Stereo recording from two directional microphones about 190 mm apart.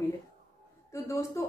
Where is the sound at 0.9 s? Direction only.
15° left (ahead or behind).